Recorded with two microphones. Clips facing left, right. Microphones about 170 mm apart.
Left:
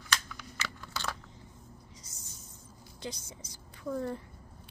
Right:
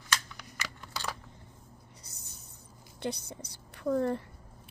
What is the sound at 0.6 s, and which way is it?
Scissors, 15° right (ahead or behind).